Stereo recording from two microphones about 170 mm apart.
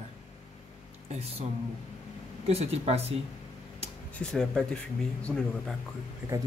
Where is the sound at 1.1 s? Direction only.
40° right (ahead or behind).